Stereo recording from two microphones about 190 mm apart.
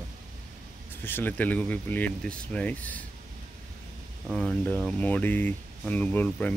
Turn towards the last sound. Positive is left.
turn(degrees=10)  # may be behind; listen again after turning